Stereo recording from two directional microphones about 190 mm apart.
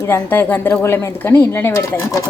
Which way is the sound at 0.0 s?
10° left (ahead or behind).